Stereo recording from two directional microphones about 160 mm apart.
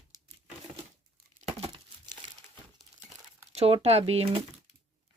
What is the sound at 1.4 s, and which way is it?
Crumpling, 35° right (ahead or behind).